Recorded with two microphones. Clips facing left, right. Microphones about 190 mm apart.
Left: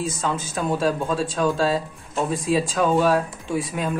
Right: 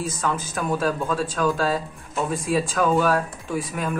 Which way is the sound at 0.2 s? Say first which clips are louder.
Left 1 dB; 25° left (ahead or behind).